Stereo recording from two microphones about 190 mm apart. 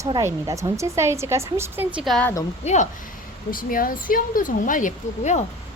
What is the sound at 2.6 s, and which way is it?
Speech, 35° left (ahead or behind).